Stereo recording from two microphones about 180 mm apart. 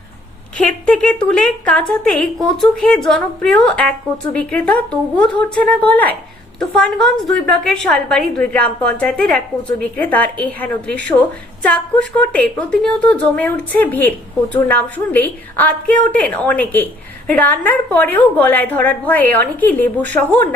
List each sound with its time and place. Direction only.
0.5 s a woman's voice: 5° left (ahead or behind)